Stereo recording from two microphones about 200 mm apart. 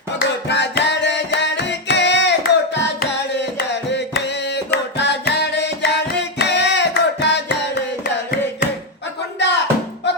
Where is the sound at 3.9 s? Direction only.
60° left (ahead or behind).